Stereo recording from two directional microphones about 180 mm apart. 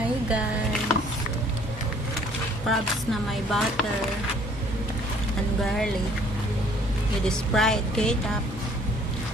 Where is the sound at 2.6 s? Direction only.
Centre (ahead or behind).